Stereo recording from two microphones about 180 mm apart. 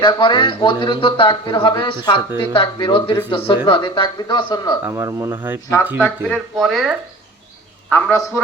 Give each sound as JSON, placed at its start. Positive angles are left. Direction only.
{"t": 0.0, "sound": "speech", "side_deg": 25}
{"t": 4.8, "sound": "speech", "side_deg": -15}
{"t": 6.0, "sound": "a man's voice", "side_deg": 0}